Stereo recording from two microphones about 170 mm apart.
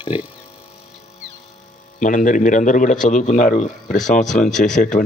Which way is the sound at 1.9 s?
50° left (ahead or behind).